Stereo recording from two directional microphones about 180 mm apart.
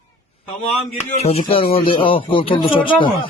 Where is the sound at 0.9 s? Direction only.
40° left (ahead or behind).